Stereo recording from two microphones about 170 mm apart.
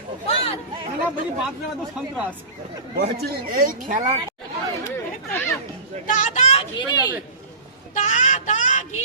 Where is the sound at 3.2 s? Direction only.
55° right (ahead or behind).